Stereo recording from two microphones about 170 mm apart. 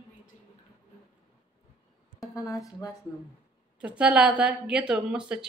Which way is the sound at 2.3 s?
20° left (ahead or behind).